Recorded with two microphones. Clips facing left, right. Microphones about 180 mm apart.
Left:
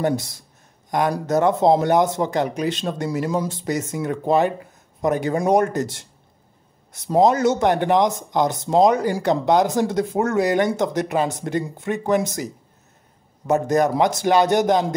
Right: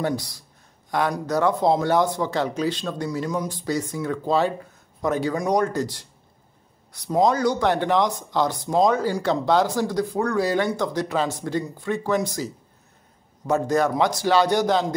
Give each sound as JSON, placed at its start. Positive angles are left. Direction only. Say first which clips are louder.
{"t": 0.0, "sound": "speech", "louder": "left 4 dB", "side_deg": 20}